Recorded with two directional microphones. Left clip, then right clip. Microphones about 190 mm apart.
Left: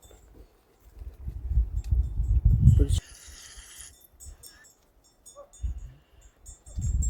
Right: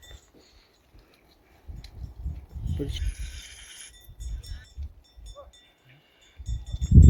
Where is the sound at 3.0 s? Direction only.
40° right (ahead or behind).